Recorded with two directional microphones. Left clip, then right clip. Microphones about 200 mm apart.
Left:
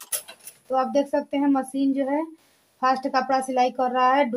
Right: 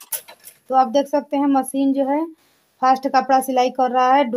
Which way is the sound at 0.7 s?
45° right (ahead or behind).